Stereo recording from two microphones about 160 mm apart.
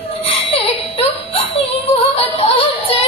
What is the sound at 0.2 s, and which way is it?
Music, 35° left (ahead or behind).